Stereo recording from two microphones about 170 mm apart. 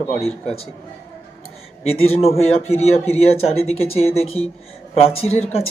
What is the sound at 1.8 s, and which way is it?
Speech, 35° left (ahead or behind).